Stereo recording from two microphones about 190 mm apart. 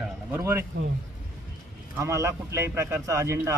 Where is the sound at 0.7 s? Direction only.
65° right (ahead or behind).